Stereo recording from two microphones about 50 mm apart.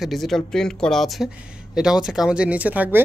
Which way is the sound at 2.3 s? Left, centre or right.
Right.